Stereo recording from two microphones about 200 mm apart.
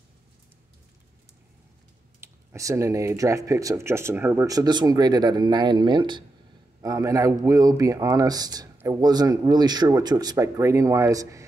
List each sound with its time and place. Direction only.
2.1 s speech: 15° right (ahead or behind)